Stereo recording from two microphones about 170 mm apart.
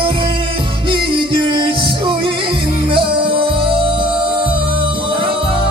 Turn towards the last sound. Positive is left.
turn(degrees=-30)  # may be behind; listen again after turning